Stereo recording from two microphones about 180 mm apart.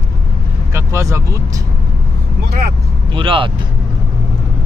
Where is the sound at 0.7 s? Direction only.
15° right (ahead or behind).